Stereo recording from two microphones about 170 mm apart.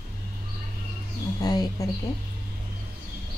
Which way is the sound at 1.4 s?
20° left (ahead or behind).